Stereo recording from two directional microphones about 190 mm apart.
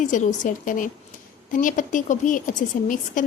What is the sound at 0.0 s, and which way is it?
Speech, 40° left (ahead or behind).